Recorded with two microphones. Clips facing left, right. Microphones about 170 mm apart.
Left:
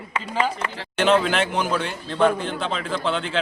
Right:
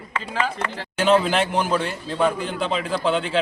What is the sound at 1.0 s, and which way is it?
Speech, centre (ahead or behind).